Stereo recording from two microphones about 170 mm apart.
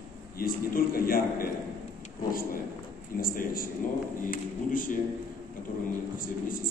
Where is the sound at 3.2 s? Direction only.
55° left (ahead or behind).